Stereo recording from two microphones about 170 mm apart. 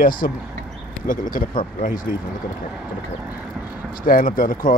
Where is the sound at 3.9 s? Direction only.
55° left (ahead or behind).